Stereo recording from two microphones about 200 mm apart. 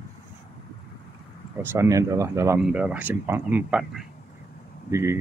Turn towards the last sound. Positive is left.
turn(degrees=-15)  # may be behind; listen again after turning